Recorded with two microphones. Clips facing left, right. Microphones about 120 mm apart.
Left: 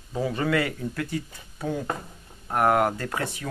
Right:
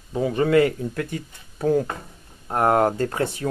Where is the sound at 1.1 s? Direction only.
45° right (ahead or behind).